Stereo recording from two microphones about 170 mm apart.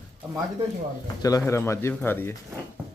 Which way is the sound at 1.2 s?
20° left (ahead or behind).